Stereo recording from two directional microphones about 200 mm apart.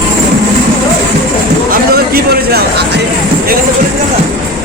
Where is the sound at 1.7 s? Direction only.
50° right (ahead or behind).